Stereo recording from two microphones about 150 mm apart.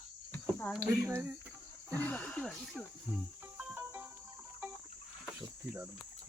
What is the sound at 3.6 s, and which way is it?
Music, 10° right (ahead or behind).